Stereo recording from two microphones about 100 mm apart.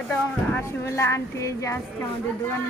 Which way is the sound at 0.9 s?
30° left (ahead or behind).